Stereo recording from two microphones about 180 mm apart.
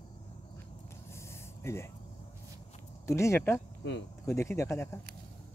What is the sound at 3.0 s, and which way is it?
Speech, 15° left (ahead or behind).